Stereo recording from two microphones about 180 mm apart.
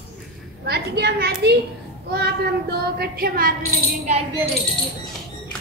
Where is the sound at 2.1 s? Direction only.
65° right (ahead or behind).